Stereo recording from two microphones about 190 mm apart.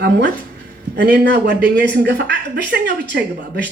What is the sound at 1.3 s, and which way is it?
A man's voice, 65° right (ahead or behind).